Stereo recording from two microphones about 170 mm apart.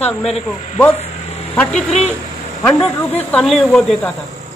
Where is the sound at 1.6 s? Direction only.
5° left (ahead or behind).